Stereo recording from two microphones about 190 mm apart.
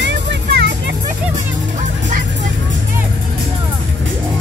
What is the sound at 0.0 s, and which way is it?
Music, 65° right (ahead or behind).